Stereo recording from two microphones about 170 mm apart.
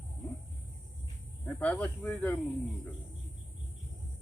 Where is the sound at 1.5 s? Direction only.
10° left (ahead or behind).